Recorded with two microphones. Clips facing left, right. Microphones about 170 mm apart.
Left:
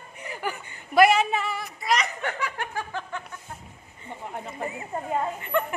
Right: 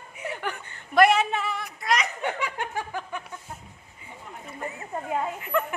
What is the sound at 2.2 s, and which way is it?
Snicker, 20° right (ahead or behind).